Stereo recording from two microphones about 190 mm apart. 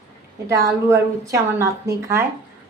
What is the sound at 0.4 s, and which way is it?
A woman's voice, 15° right (ahead or behind).